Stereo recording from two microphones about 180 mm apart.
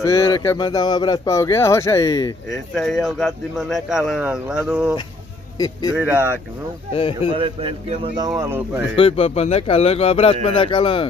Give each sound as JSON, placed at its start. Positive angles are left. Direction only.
{"t": 0.0, "sound": "speech", "side_deg": 15}
{"t": 2.5, "sound": "speech", "side_deg": 0}
{"t": 5.6, "sound": "speech", "side_deg": 20}
{"t": 5.9, "sound": "speech", "side_deg": -10}
{"t": 7.3, "sound": "speech", "side_deg": -30}
{"t": 8.4, "sound": "speech", "side_deg": -10}
{"t": 8.9, "sound": "speech", "side_deg": 30}